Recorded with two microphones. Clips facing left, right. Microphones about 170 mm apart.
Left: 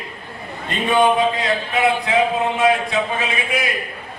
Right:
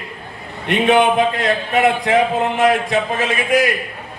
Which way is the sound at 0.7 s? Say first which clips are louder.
Right 3 dB; 70° right (ahead or behind).